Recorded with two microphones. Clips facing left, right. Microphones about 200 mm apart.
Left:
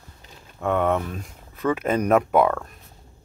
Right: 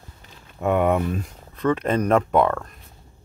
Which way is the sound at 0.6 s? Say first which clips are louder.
Right 2 dB; 15° right (ahead or behind).